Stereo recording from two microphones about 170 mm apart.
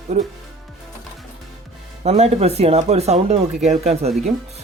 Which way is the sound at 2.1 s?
40° right (ahead or behind).